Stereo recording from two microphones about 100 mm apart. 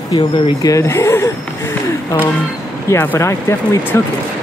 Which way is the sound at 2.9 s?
25° left (ahead or behind).